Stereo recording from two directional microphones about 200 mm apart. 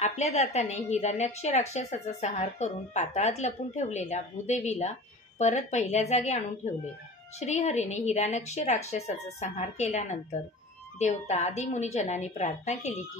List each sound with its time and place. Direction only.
0.0 s a woman's voice: 35° left (ahead or behind)